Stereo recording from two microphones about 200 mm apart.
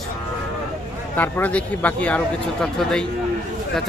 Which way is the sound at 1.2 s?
10° left (ahead or behind).